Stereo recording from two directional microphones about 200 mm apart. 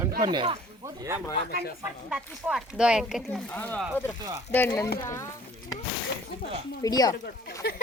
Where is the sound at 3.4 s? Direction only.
10° left (ahead or behind).